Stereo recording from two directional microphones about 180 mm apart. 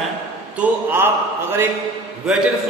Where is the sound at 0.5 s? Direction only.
10° right (ahead or behind).